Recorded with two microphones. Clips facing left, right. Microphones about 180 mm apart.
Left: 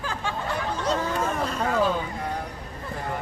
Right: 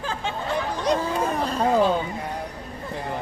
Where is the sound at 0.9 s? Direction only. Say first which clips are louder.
Right 2 dB; 30° right (ahead or behind).